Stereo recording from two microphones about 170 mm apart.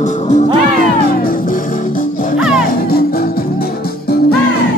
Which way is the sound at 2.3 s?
5° right (ahead or behind).